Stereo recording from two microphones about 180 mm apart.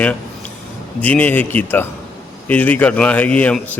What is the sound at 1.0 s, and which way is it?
A man's voice, 10° left (ahead or behind).